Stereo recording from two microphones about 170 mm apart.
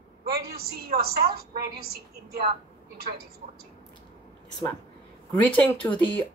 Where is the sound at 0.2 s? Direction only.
65° right (ahead or behind).